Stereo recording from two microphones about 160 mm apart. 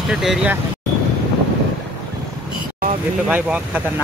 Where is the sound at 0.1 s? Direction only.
5° right (ahead or behind).